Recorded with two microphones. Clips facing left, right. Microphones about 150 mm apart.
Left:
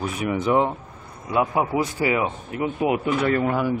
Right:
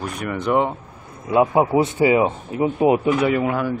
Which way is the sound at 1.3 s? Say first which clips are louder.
Right 6 dB; 25° right (ahead or behind).